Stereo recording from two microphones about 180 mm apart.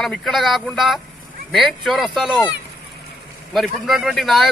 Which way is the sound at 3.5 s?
Centre (ahead or behind).